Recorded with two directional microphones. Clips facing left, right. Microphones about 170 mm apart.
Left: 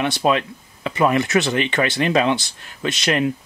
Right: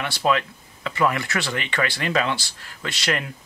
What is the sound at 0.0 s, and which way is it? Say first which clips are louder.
Speech: left 4 dB; 20° left (ahead or behind).